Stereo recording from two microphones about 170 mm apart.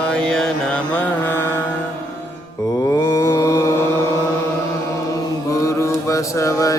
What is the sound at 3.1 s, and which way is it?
Mantra, 15° left (ahead or behind).